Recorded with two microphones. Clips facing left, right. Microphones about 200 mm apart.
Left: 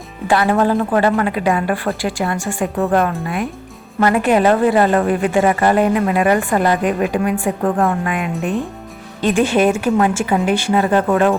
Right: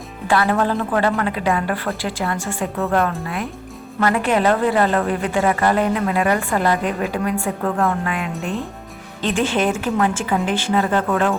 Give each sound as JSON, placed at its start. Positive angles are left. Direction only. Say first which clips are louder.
{"t": 0.3, "sound": "a woman's voice", "louder": "left 3 dB", "side_deg": 15}